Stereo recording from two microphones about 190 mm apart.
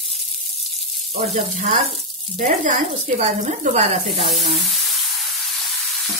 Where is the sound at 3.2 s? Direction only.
35° right (ahead or behind).